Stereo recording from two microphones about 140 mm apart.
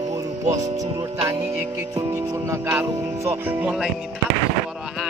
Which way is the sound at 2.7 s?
15° right (ahead or behind).